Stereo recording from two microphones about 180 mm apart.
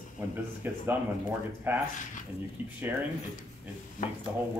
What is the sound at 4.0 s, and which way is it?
Speech, 50° left (ahead or behind).